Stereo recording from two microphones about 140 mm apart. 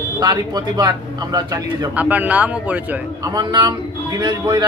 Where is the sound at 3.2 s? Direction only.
30° right (ahead or behind).